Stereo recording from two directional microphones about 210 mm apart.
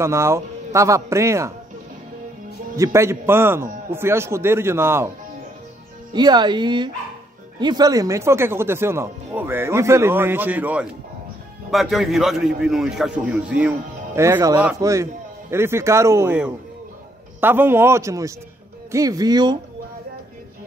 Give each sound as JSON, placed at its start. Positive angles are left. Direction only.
{"t": 0.0, "sound": "speech", "side_deg": -15}
{"t": 2.7, "sound": "speech", "side_deg": -15}
{"t": 6.1, "sound": "a man's voice", "side_deg": -20}